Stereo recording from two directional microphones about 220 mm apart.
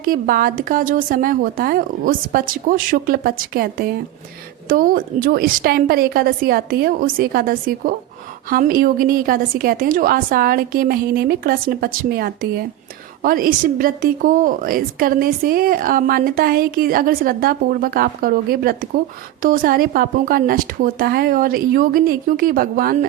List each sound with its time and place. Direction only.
0.0 s a woman's voice: 40° right (ahead or behind)